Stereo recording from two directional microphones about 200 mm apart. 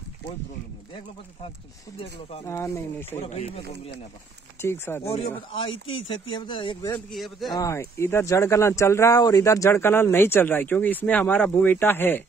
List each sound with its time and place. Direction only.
2.4 s speech: 15° left (ahead or behind)
3.2 s speech: 30° left (ahead or behind)
4.6 s speech: 10° left (ahead or behind)
5.5 s speech: 25° left (ahead or behind)
7.1 s a man's voice: centre (ahead or behind)
7.5 s speech: 15° left (ahead or behind)